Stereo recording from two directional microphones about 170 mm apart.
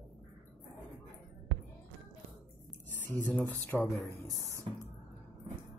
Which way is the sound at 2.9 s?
10° left (ahead or behind).